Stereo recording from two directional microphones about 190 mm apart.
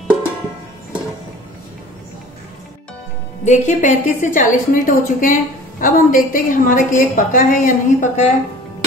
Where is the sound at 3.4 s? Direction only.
40° left (ahead or behind).